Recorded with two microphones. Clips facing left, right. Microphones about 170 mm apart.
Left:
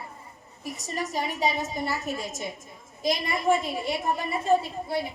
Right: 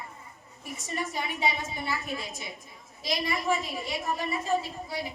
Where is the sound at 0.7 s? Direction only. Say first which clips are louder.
Left 2 dB; 40° left (ahead or behind).